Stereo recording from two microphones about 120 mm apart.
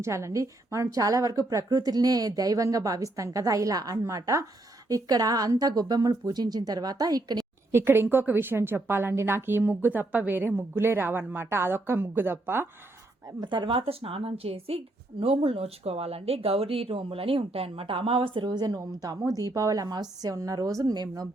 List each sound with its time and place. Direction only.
0.0 s a woman's voice: 25° right (ahead or behind)
7.7 s a woman's voice: 20° right (ahead or behind)
13.2 s a woman's voice: 35° right (ahead or behind)